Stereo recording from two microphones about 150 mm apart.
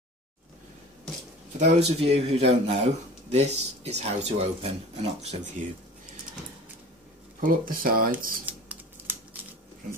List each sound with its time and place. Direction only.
1.6 s speech: 45° right (ahead or behind)
7.3 s speech: 70° right (ahead or behind)
8.5 s scissors: 10° right (ahead or behind)